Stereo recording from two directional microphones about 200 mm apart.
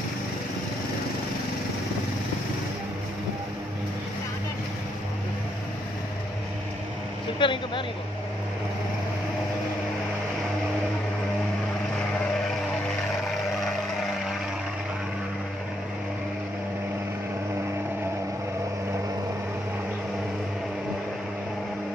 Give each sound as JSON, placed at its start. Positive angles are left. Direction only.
{"t": 7.3, "sound": "speech", "side_deg": 25}